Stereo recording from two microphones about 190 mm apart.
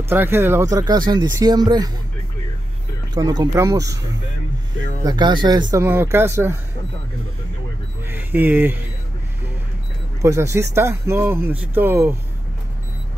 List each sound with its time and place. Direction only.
0.1 s speech: 10° right (ahead or behind)
3.2 s speech: 20° right (ahead or behind)
5.0 s speech: 25° right (ahead or behind)
8.1 s speech: 10° right (ahead or behind)
10.2 s speech: 15° right (ahead or behind)